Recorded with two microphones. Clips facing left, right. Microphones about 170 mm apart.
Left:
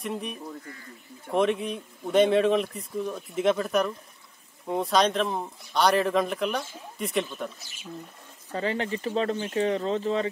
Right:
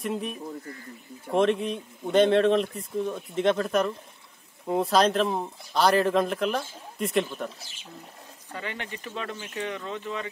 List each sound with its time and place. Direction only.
0.0 s speech: centre (ahead or behind)
8.5 s speech: 35° left (ahead or behind)